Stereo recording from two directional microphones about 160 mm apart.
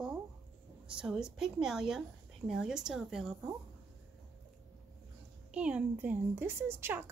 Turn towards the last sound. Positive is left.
turn(degrees=-15)  # may be behind; listen again after turning